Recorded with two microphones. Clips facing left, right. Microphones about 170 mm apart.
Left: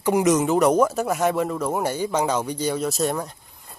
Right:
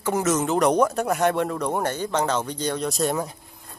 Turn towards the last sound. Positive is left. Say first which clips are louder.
# right 2 dB
turn(degrees=0)  # may be behind; listen again after turning